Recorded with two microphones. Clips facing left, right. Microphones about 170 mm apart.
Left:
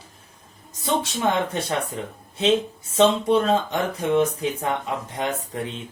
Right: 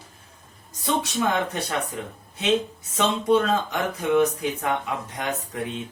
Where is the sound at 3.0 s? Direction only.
30° left (ahead or behind).